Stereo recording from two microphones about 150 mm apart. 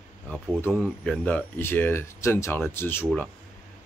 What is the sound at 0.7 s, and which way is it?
Speech, 5° left (ahead or behind).